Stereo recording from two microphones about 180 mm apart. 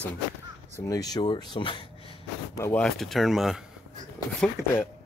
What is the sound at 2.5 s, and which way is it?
Speech, 15° left (ahead or behind).